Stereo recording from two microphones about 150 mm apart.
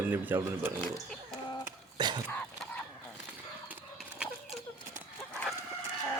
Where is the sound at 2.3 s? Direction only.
10° left (ahead or behind).